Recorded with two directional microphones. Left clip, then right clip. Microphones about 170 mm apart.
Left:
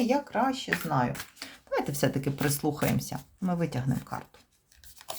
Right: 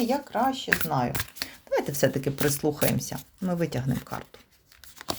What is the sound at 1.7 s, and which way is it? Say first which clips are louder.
Speech: right 4 dB; 20° right (ahead or behind).